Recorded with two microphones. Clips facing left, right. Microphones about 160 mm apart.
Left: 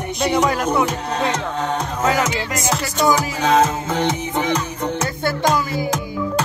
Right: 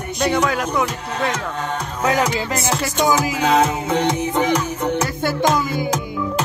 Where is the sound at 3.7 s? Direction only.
60° right (ahead or behind).